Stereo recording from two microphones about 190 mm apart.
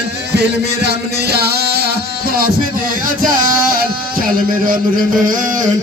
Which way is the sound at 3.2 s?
45° right (ahead or behind).